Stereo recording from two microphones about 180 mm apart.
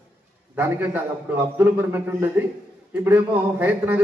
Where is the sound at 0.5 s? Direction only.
10° right (ahead or behind).